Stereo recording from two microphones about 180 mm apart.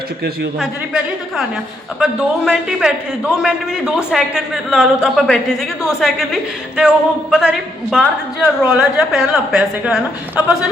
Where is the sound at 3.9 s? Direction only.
5° right (ahead or behind).